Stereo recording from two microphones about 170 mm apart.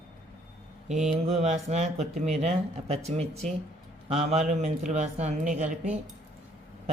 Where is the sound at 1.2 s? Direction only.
40° right (ahead or behind).